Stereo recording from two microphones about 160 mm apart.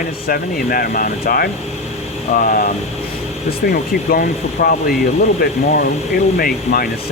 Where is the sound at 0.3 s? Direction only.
65° left (ahead or behind).